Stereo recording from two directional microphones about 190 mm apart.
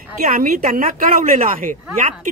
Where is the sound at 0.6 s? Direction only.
35° right (ahead or behind).